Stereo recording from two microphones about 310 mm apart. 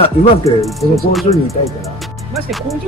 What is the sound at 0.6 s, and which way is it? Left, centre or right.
Speech, centre.